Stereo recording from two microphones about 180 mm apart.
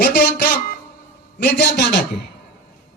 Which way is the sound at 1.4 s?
65° left (ahead or behind).